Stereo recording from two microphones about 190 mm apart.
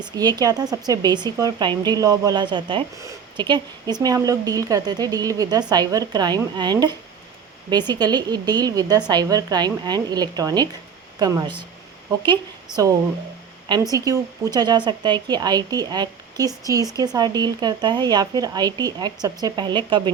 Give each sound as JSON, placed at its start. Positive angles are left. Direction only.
{"t": 0.0, "sound": "speech", "side_deg": -20}
{"t": 12.7, "sound": "speech", "side_deg": -20}